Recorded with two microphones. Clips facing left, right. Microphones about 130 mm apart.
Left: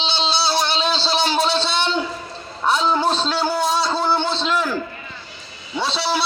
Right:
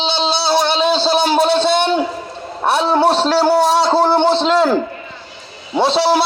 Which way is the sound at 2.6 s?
65° right (ahead or behind).